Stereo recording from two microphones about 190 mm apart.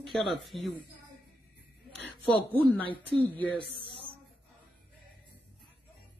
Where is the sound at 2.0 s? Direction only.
10° left (ahead or behind).